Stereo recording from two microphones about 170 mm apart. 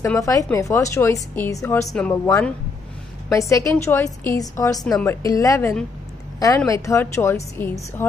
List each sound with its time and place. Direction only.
0.0 s a woman's voice: 20° left (ahead or behind)
1.9 s a woman's voice: 5° left (ahead or behind)
3.3 s a woman's voice: 20° left (ahead or behind)